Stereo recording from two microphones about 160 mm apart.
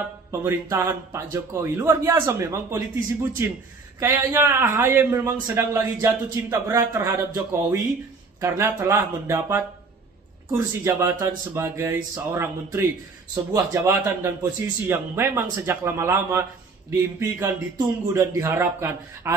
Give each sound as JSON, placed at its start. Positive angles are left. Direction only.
{"t": 0.3, "sound": "a man's voice", "side_deg": -20}